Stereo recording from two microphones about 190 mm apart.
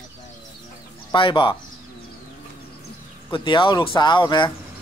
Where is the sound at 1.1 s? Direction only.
25° left (ahead or behind).